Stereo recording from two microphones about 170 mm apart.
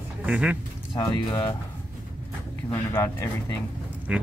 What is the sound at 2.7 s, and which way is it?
Speech, 20° left (ahead or behind).